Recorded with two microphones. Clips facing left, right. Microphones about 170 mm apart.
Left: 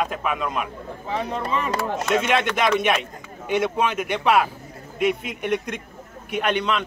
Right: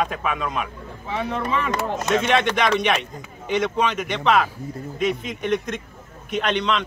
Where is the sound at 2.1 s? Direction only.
10° left (ahead or behind).